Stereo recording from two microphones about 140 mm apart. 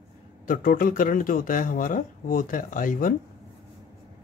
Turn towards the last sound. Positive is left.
turn(degrees=75)  # may be behind; listen again after turning